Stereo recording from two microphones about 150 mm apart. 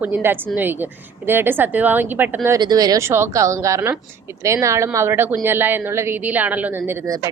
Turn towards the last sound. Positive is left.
turn(degrees=-15)  # may be behind; listen again after turning